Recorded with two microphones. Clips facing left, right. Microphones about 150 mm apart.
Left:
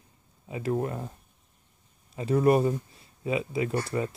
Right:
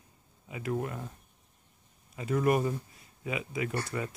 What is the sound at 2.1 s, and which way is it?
Speech, 30° left (ahead or behind).